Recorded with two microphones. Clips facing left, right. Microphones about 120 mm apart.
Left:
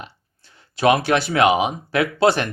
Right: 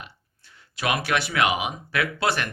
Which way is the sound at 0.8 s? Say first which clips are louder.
Left 8 dB; 30° left (ahead or behind).